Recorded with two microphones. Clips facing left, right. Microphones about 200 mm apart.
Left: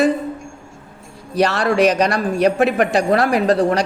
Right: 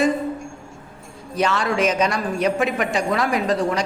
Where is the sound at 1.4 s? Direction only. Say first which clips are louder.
Left 5 dB; 70° left (ahead or behind).